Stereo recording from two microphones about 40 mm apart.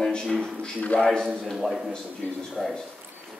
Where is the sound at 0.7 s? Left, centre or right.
Left.